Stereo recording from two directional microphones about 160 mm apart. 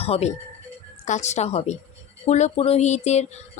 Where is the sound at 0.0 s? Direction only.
40° left (ahead or behind).